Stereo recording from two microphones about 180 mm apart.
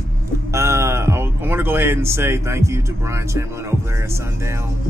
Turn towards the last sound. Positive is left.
turn(degrees=-15)  # may be behind; listen again after turning